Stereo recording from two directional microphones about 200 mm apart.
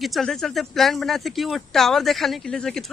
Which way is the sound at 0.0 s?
Centre (ahead or behind).